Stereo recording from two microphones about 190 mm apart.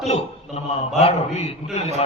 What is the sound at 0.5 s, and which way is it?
Speech, 40° left (ahead or behind).